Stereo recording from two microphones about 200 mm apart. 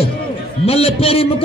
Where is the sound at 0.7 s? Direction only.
30° left (ahead or behind).